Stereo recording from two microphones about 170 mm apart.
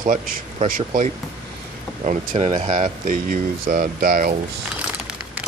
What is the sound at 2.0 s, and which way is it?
Speech, 40° right (ahead or behind).